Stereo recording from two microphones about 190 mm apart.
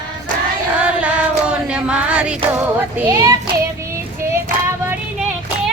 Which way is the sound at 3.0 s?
15° right (ahead or behind).